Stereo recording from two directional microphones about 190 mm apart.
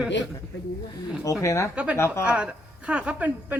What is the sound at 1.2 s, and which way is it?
Speech, 15° left (ahead or behind).